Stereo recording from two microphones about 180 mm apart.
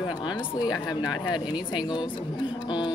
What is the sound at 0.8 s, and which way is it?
Speech, 25° left (ahead or behind).